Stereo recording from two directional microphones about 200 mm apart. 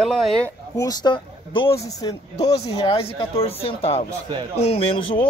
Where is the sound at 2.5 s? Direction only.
30° left (ahead or behind).